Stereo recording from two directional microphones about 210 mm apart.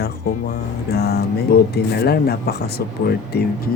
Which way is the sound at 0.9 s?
50° left (ahead or behind).